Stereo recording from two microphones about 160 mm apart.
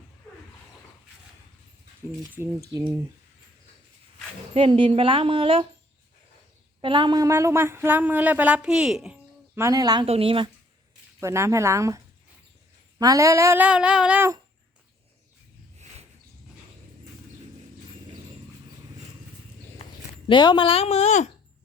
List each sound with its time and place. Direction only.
4.5 s a woman's voice: 35° right (ahead or behind)
6.8 s speech: 30° right (ahead or behind); by 9.1 s 5° right (ahead or behind)
9.6 s speech: 20° right (ahead or behind)
10.1 s a woman's voice: 35° right (ahead or behind)
11.2 s speech: 15° right (ahead or behind)
20.2 s speech: 30° left (ahead or behind); by 21.2 s 45° left (ahead or behind)